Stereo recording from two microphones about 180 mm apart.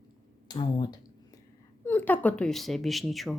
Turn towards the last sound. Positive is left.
turn(degrees=0)  # may be behind; listen again after turning